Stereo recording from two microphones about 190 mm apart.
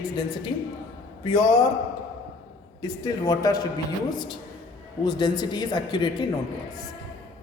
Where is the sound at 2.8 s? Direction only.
20° left (ahead or behind).